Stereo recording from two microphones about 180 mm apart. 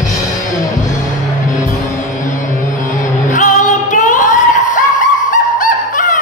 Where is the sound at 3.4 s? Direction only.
45° left (ahead or behind).